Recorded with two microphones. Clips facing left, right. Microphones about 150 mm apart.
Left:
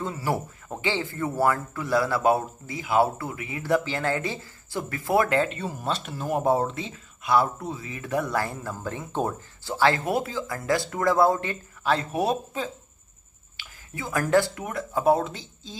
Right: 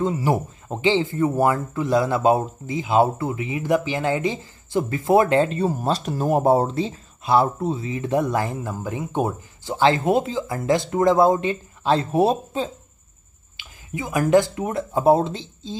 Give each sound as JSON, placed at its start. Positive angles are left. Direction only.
{"t": 0.0, "sound": "speech", "side_deg": -20}
{"t": 13.6, "sound": "speech", "side_deg": -15}